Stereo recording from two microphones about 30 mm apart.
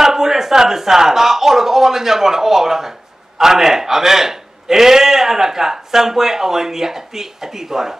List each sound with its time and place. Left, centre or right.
0.0 s a man's voice: centre